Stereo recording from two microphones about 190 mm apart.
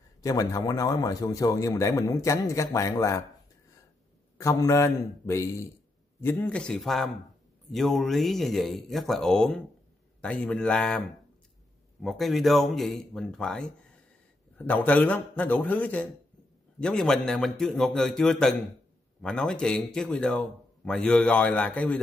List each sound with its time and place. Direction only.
0.2 s a man's voice: 20° left (ahead or behind)
4.4 s a man's voice: 15° left (ahead or behind)
14.7 s a man's voice: 10° left (ahead or behind)